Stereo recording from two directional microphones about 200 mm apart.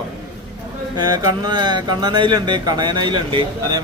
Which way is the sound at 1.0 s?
20° right (ahead or behind).